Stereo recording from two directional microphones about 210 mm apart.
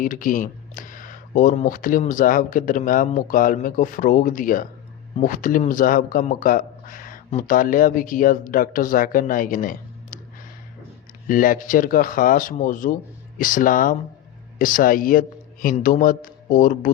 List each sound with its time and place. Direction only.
0.0 s speech: 40° left (ahead or behind)
11.3 s speech: 40° left (ahead or behind)